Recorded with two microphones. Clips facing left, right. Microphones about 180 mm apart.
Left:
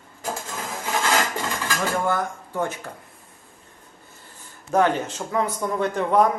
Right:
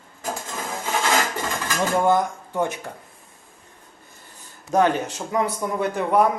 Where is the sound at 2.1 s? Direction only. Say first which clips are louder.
Right 5 dB; 20° right (ahead or behind).